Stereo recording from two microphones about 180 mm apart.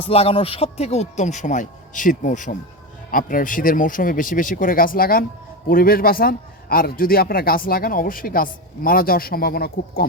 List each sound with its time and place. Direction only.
0.1 s a man's voice: 30° left (ahead or behind); by 10.1 s 55° left (ahead or behind)